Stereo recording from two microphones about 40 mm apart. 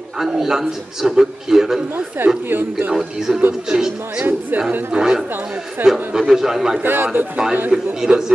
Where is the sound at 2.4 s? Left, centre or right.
Right.